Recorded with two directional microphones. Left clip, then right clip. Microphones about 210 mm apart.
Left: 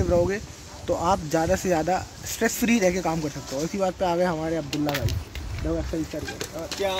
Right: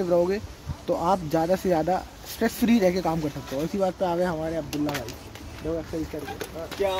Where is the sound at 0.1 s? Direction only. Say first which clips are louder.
Even; 5° right (ahead or behind).